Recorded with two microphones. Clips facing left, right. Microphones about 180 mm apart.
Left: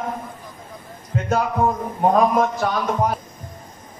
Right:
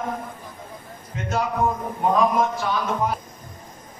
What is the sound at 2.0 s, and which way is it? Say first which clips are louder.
A man's voice: left 3 dB; 45° left (ahead or behind).